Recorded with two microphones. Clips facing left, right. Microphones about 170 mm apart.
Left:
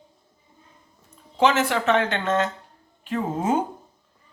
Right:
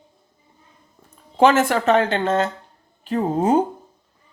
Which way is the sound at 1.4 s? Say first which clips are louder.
Right 5 dB; 50° right (ahead or behind).